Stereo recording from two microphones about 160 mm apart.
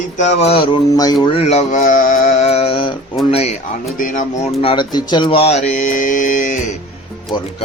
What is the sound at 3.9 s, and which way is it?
Speech, 55° left (ahead or behind).